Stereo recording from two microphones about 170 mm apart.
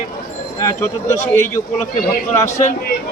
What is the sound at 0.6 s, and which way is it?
Speech, 15° left (ahead or behind).